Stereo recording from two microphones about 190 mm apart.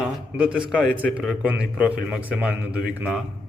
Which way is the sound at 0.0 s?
5° right (ahead or behind).